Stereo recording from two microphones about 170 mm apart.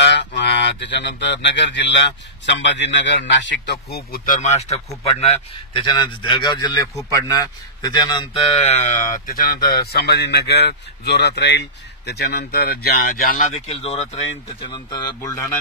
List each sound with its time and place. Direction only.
0.0 s speech: 90° left; by 4.4 s 70° left (ahead or behind)
4.4 s a man's voice: 40° left (ahead or behind)
13.7 s speech: 40° left (ahead or behind)
14.7 s a man's voice: 25° left (ahead or behind)